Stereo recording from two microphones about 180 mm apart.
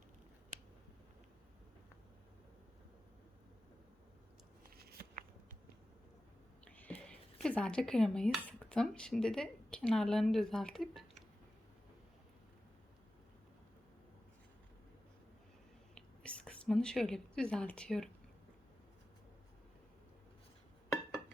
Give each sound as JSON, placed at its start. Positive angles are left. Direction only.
{"t": 4.8, "sound": "a sound", "side_deg": -60}
{"t": 6.7, "sound": "dishes", "side_deg": 10}
{"t": 8.4, "sound": "a woman's voice", "side_deg": 5}
{"t": 16.0, "sound": "speech", "side_deg": 5}